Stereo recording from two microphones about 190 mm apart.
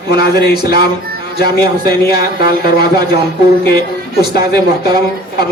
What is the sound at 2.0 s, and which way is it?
Speech, 55° left (ahead or behind).